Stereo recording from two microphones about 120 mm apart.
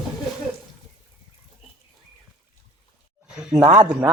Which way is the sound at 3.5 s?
40° right (ahead or behind).